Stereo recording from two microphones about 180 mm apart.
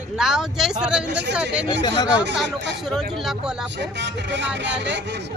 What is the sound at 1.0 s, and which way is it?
Speech, 75° right (ahead or behind).